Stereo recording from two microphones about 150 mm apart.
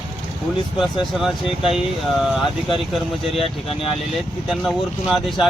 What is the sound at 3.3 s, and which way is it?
Speech, 40° left (ahead or behind).